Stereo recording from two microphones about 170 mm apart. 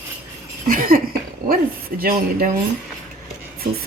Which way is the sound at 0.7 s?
55° right (ahead or behind).